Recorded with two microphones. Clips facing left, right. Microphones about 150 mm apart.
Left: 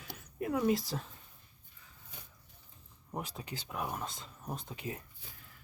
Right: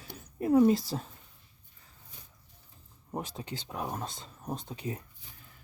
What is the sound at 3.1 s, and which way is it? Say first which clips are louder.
Speech: right 4 dB; 25° right (ahead or behind).